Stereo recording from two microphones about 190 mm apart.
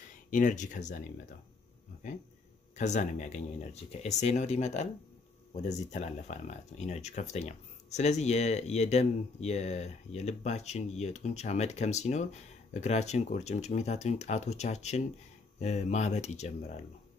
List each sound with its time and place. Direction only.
0.1 s speech: 45° left (ahead or behind)
2.8 s speech: 40° left (ahead or behind)